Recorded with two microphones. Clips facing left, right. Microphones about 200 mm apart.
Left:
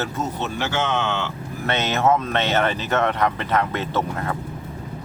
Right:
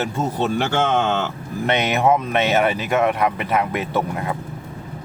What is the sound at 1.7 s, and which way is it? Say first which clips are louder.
Speech: right 2 dB; 15° right (ahead or behind).